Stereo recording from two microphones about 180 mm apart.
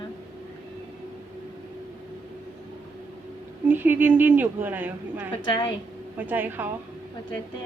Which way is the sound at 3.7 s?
10° right (ahead or behind).